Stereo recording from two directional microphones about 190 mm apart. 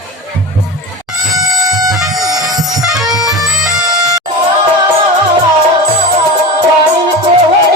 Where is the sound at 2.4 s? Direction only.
20° right (ahead or behind).